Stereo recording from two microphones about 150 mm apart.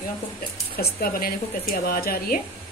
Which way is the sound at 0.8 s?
80° left.